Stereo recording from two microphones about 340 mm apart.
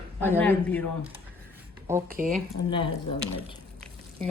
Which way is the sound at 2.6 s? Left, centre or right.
Centre.